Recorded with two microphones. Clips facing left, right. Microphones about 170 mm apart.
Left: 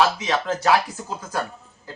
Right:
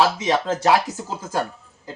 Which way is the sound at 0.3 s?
20° right (ahead or behind).